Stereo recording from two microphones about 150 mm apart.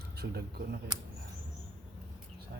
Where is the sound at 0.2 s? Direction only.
90° right.